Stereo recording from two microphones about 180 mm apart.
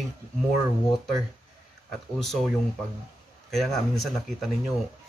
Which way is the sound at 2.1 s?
Centre (ahead or behind).